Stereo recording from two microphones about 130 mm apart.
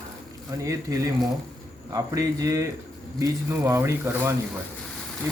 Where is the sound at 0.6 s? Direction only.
25° right (ahead or behind).